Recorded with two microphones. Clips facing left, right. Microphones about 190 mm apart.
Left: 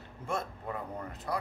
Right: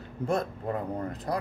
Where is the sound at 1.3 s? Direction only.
40° right (ahead or behind).